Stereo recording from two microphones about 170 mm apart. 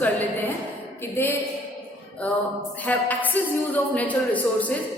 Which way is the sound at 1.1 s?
15° left (ahead or behind).